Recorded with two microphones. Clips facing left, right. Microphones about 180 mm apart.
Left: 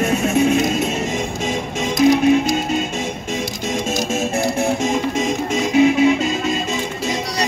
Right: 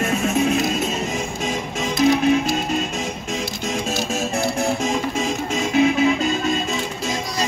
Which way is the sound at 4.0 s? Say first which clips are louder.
Left 3 dB; centre (ahead or behind).